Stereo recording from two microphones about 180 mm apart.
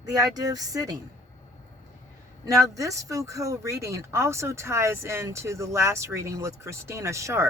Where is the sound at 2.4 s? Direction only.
20° right (ahead or behind).